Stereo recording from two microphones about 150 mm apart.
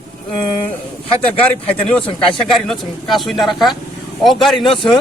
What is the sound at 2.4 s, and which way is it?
Speech, centre (ahead or behind).